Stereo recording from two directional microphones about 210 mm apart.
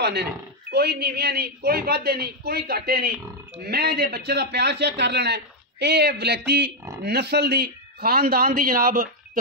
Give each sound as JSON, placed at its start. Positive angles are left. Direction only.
{"t": 0.0, "sound": "a man's voice", "side_deg": -50}